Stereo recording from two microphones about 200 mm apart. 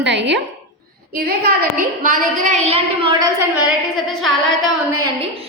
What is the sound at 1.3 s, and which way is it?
A woman's voice, 45° right (ahead or behind).